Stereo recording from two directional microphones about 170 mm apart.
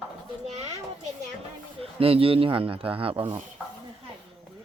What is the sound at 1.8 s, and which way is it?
A man's voice, 35° right (ahead or behind).